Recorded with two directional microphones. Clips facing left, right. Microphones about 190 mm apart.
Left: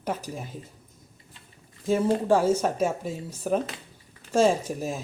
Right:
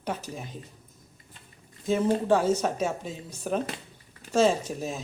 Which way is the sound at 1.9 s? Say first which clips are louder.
Left 1 dB; 10° left (ahead or behind).